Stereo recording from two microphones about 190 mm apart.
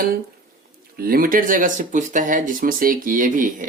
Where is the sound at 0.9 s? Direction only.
50° right (ahead or behind).